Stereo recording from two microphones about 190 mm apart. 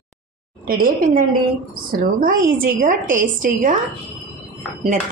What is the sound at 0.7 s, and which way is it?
A woman's voice, 50° right (ahead or behind).